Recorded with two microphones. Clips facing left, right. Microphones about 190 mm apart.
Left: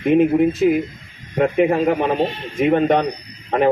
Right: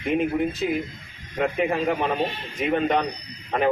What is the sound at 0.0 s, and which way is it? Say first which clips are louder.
Speech: left 9 dB; 50° left (ahead or behind).